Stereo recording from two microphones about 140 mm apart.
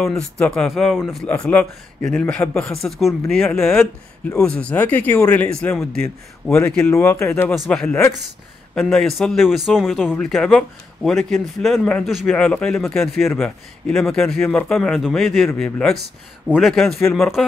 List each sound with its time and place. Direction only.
0.0 s speech: 5° left (ahead or behind); by 7.4 s 20° left (ahead or behind)
7.4 s speech: centre (ahead or behind)
7.8 s speech: 15° left (ahead or behind)